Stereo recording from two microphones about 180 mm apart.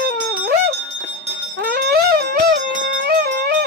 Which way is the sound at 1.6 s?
60° right (ahead or behind).